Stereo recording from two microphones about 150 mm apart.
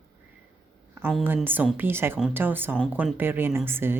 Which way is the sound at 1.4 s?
10° right (ahead or behind).